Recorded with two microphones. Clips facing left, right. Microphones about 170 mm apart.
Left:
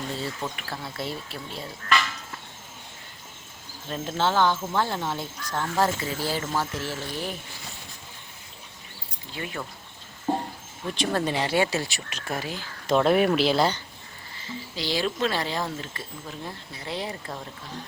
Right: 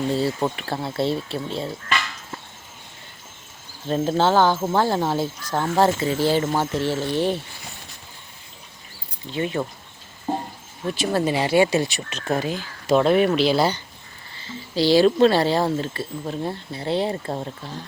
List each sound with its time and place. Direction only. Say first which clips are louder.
0.2 s speech: right 9 dB; 40° right (ahead or behind)
3.8 s speech: right 7 dB; 35° right (ahead or behind)
9.3 s speech: right 10 dB; 25° right (ahead or behind)
10.9 s speech: right 4 dB; 5° right (ahead or behind)
12.9 s speech: right 3 dB; centre (ahead or behind)
14.4 s speech: right 11 dB; 30° right (ahead or behind)